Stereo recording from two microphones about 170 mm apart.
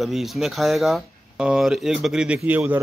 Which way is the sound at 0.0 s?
Centre (ahead or behind).